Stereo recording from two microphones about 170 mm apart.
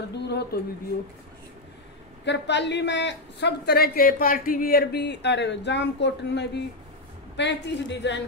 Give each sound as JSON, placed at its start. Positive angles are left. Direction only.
{"t": 0.1, "sound": "speech", "side_deg": 80}
{"t": 2.2, "sound": "a woman's voice", "side_deg": 90}